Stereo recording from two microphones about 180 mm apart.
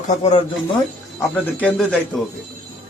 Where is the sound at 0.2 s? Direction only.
35° left (ahead or behind).